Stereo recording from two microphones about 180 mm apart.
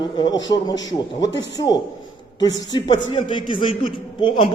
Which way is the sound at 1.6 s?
25° left (ahead or behind).